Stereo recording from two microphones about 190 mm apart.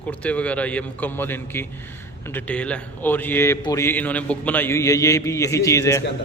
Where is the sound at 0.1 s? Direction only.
5° left (ahead or behind).